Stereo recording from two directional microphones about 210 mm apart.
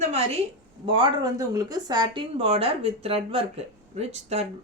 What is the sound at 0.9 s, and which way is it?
Speech, 25° right (ahead or behind).